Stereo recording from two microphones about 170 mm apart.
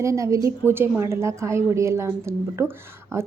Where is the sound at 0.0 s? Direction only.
20° right (ahead or behind).